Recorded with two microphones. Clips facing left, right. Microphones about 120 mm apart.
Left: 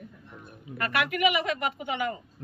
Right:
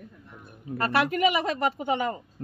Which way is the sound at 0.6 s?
30° right (ahead or behind).